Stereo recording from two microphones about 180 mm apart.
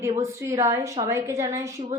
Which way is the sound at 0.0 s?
15° right (ahead or behind).